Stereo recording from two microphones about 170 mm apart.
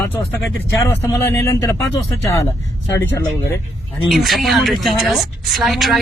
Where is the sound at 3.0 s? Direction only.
15° left (ahead or behind).